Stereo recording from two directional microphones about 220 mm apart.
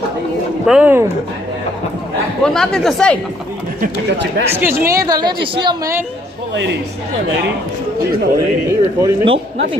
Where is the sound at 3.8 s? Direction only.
50° right (ahead or behind).